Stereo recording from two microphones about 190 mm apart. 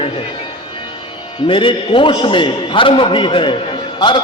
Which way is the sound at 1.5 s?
25° left (ahead or behind).